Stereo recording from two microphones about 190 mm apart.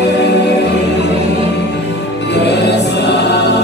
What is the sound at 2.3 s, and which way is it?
Music, 65° left (ahead or behind).